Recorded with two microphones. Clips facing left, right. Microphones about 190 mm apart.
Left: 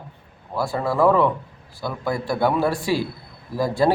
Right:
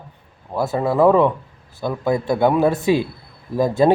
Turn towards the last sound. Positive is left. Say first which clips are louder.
# right 4 dB
turn(degrees=-20)  # may be behind; listen again after turning